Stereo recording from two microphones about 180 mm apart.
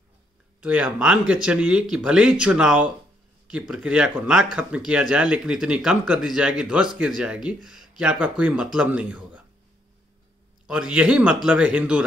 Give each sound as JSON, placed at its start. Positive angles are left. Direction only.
{"t": 0.6, "sound": "a man's voice", "side_deg": -5}
{"t": 10.7, "sound": "a man's voice", "side_deg": -5}